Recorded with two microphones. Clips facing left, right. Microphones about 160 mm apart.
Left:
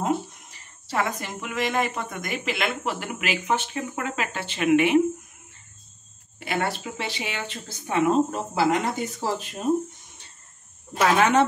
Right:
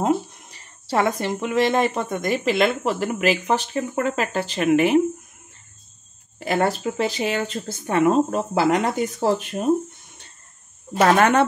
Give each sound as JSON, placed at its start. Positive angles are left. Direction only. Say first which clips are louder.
{"t": 0.0, "sound": "speech", "louder": "right 4 dB", "side_deg": -35}
{"t": 6.4, "sound": "speech", "louder": "right 6 dB", "side_deg": -40}
{"t": 11.0, "sound": "speech", "louder": "right 3 dB", "side_deg": -55}